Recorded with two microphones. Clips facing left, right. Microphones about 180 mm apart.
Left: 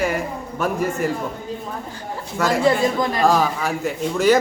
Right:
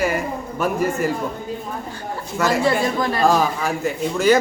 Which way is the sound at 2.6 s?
15° left (ahead or behind).